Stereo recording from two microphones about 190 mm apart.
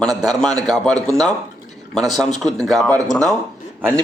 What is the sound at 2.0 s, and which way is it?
A man's voice, centre (ahead or behind).